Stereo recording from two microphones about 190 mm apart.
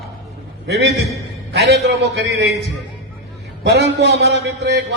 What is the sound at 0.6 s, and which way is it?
A man's voice, 65° right (ahead or behind).